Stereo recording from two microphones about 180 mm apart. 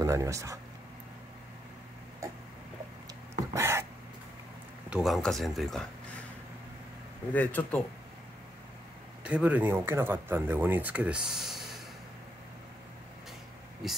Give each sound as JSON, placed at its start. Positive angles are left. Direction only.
{"t": 0.0, "sound": "speech", "side_deg": -15}
{"t": 3.5, "sound": "a sound", "side_deg": -15}
{"t": 4.8, "sound": "speech", "side_deg": -5}
{"t": 7.3, "sound": "speech", "side_deg": 10}
{"t": 9.2, "sound": "speech", "side_deg": -10}